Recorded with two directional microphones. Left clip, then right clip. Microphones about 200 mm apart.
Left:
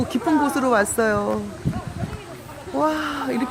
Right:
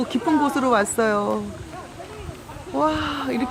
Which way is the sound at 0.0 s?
5° left (ahead or behind).